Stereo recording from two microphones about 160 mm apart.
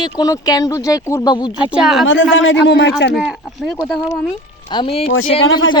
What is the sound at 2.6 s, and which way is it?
Speech, 90° left.